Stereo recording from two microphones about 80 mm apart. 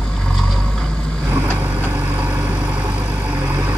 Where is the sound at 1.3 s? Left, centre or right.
Right.